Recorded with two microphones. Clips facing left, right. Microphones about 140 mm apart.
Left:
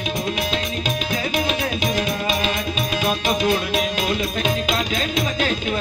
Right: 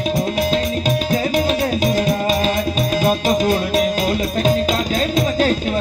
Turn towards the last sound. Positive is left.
turn(degrees=-40)  # may be behind; listen again after turning